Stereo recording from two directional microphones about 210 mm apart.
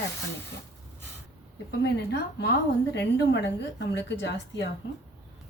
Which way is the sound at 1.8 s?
50° left (ahead or behind).